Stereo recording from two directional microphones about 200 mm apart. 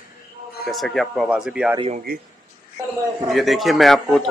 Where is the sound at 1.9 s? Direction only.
50° right (ahead or behind).